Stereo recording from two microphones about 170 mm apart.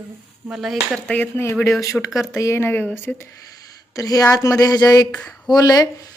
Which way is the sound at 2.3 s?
15° left (ahead or behind).